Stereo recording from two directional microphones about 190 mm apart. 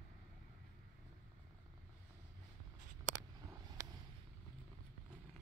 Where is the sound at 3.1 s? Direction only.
45° right (ahead or behind).